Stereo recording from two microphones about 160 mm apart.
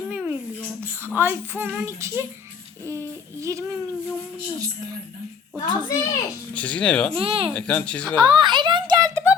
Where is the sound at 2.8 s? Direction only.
20° right (ahead or behind).